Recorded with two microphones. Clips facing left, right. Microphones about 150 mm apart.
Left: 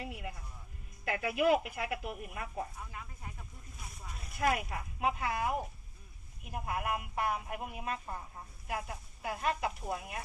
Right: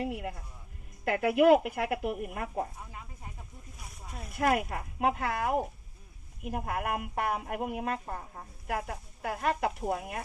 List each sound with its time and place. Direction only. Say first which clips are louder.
0.1 s speech: right 7 dB; 55° right (ahead or behind)
2.9 s a sound: right 1 dB; 25° right (ahead or behind)
4.4 s speech: right 4 dB; 50° right (ahead or behind)
8.0 s speech: right 3 dB; 40° right (ahead or behind)
8.6 s speech: right 5 dB; 50° right (ahead or behind)